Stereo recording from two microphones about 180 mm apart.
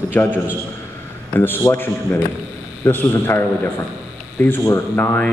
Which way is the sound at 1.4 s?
10° left (ahead or behind).